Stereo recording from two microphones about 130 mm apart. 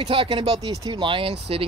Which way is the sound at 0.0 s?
40° right (ahead or behind).